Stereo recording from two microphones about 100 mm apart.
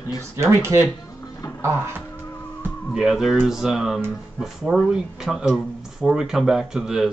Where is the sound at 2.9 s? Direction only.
5° right (ahead or behind).